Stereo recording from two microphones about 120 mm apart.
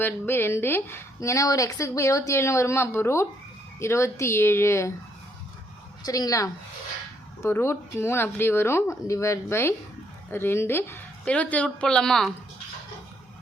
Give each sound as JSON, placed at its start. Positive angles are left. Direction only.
{"t": 0.0, "sound": "speech", "side_deg": 20}
{"t": 6.1, "sound": "speech", "side_deg": 30}